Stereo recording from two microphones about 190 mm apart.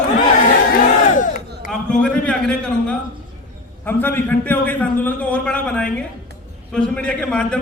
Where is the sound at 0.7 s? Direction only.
45° left (ahead or behind).